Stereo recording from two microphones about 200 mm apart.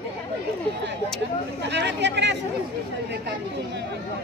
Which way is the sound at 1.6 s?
60° right (ahead or behind).